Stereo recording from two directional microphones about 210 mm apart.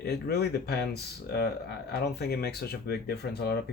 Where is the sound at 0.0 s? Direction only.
50° left (ahead or behind).